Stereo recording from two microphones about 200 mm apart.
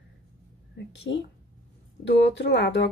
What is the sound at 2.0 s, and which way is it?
Speech, 60° left (ahead or behind).